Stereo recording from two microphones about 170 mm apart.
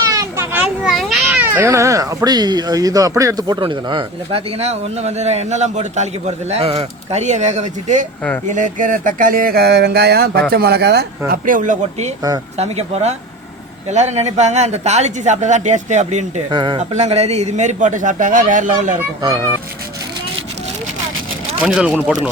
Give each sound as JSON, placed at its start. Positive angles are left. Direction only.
{"t": 0.1, "sound": "children playing", "side_deg": -20}
{"t": 0.9, "sound": "speech", "side_deg": 0}
{"t": 11.3, "sound": "speech", "side_deg": -50}
{"t": 16.5, "sound": "speech", "side_deg": -25}
{"t": 16.9, "sound": "speech", "side_deg": -40}
{"t": 19.2, "sound": "speech", "side_deg": -25}
{"t": 21.6, "sound": "speech", "side_deg": -5}